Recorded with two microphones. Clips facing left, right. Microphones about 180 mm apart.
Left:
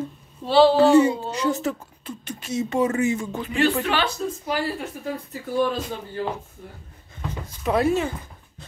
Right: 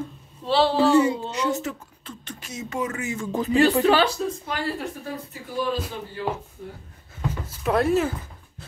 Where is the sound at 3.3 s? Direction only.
40° right (ahead or behind).